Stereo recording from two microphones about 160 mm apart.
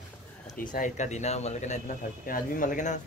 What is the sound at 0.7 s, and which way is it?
A man's voice, 50° left (ahead or behind).